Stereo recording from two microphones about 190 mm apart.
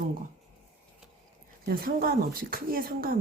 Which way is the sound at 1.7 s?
50° right (ahead or behind).